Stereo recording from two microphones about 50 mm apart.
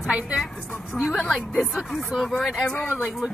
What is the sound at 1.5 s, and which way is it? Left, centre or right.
Speech, centre.